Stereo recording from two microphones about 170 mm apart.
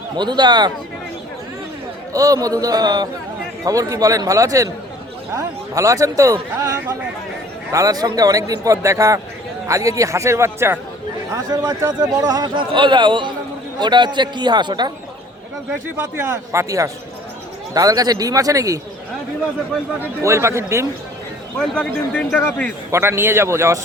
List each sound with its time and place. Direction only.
0.2 s speech: 25° right (ahead or behind)
2.1 s a man's voice: 20° right (ahead or behind)
16.0 s a man's voice: 15° right (ahead or behind)
20.2 s a man's voice: 15° right (ahead or behind)
21.6 s a man's voice: 5° left (ahead or behind)
22.9 s a man's voice: 15° right (ahead or behind)